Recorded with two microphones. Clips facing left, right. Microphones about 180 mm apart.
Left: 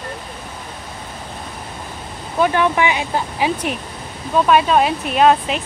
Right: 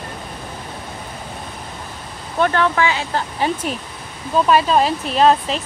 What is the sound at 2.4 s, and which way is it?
Speech, 15° left (ahead or behind).